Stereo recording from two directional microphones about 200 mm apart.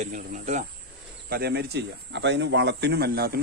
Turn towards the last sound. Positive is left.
turn(degrees=-50)  # may be behind; listen again after turning